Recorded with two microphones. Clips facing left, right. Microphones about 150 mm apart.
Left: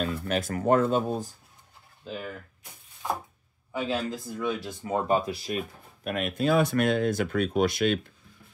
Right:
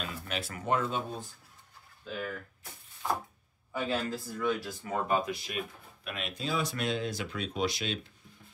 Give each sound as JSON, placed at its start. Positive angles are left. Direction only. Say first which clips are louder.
{"t": 0.0, "sound": "speech", "louder": "left 9 dB", "side_deg": 45}
{"t": 2.0, "sound": "speech", "louder": "left 1 dB", "side_deg": 20}
{"t": 3.7, "sound": "a man's voice", "louder": "left 3 dB", "side_deg": 15}
{"t": 6.0, "sound": "speech", "louder": "left 11 dB", "side_deg": 50}